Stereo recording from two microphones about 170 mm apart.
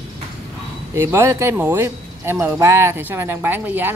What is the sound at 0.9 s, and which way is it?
Speech, 15° right (ahead or behind).